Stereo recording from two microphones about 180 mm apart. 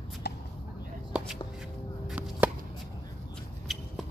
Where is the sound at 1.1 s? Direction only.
5° right (ahead or behind).